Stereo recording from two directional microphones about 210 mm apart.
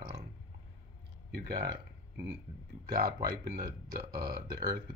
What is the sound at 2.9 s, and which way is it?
Speech, 45° right (ahead or behind).